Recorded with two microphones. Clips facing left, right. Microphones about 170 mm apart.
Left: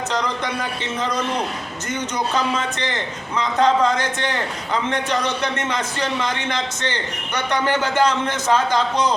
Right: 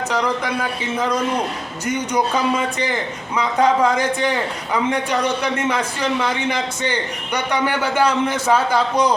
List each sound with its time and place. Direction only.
0.1 s speech: 10° right (ahead or behind)
1.9 s a man's voice: 10° right (ahead or behind)